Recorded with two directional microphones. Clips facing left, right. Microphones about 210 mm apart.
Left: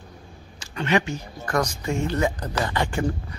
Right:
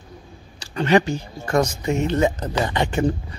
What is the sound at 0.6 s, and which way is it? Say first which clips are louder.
Speech: right 5 dB; 35° right (ahead or behind).